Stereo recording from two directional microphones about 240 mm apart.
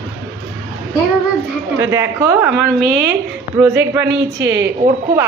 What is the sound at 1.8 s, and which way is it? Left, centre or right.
A woman's voice, centre.